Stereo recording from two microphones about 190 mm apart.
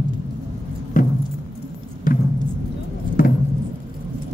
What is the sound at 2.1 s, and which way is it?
Music, 45° left (ahead or behind).